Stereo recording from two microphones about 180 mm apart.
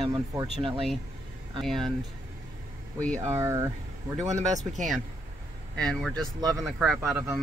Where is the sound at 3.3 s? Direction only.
15° right (ahead or behind).